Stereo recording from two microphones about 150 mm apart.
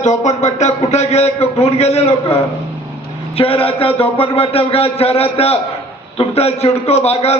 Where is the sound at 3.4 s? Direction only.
40° left (ahead or behind).